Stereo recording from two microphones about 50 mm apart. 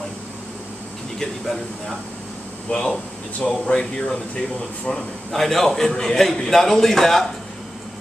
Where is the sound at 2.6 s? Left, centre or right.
Centre.